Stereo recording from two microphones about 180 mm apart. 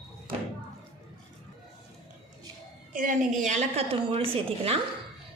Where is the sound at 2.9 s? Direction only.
45° right (ahead or behind).